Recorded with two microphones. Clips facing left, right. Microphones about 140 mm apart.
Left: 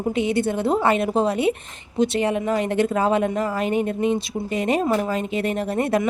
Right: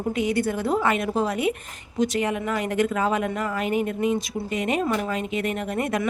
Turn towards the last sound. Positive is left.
turn(degrees=35)  # may be behind; listen again after turning